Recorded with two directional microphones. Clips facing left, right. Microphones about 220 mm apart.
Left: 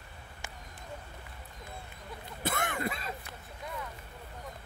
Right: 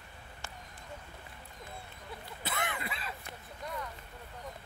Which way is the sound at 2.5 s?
45° left (ahead or behind).